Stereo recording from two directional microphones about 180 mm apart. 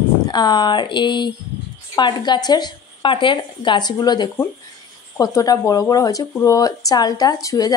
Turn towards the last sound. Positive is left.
turn(degrees=20)  # may be behind; listen again after turning